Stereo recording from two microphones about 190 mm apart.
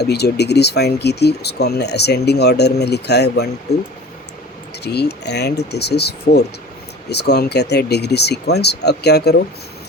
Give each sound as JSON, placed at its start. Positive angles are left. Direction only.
{"t": 0.0, "sound": "speech", "side_deg": 60}
{"t": 4.8, "sound": "speech", "side_deg": 60}